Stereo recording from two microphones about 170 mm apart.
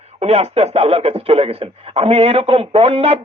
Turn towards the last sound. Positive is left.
turn(degrees=-35)  # may be behind; listen again after turning